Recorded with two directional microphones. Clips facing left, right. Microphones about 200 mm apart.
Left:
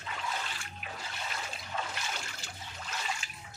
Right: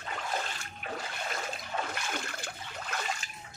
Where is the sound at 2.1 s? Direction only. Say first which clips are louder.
Right 6 dB; 55° right (ahead or behind).